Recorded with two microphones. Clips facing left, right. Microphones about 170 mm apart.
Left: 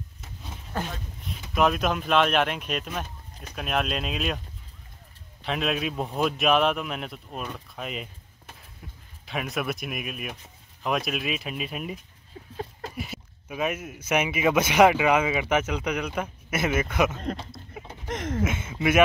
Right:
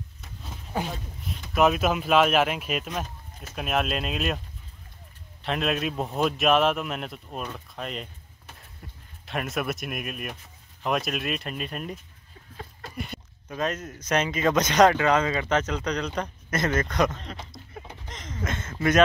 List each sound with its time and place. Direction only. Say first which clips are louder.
0.8 s speech: right 2 dB; centre (ahead or behind)
5.4 s a man's voice: right 1 dB; centre (ahead or behind)
9.2 s a man's voice: right 1 dB; centre (ahead or behind)
17.5 s a sound: left 1 dB; 5° left (ahead or behind)
18.0 s a sound: left 11 dB; 55° left (ahead or behind)
18.4 s speech: right 2 dB; 10° left (ahead or behind)